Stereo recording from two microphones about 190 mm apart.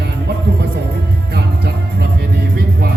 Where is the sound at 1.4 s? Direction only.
60° right (ahead or behind).